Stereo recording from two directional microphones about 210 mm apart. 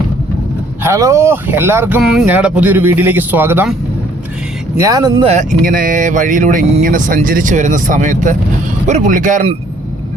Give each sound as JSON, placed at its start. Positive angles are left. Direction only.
{"t": 0.8, "sound": "speech", "side_deg": -15}
{"t": 4.8, "sound": "speech", "side_deg": -15}
{"t": 5.2, "sound": "speech", "side_deg": -35}